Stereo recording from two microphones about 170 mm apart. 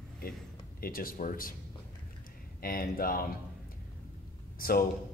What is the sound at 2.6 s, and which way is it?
Speech, 60° left (ahead or behind).